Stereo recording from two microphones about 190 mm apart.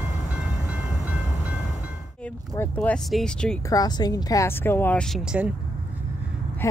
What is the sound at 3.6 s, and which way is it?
A woman's voice, 20° left (ahead or behind).